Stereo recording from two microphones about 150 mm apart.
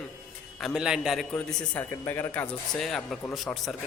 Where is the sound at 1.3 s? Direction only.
15° left (ahead or behind).